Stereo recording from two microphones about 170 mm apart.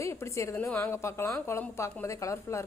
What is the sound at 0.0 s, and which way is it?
A woman's voice, 15° left (ahead or behind).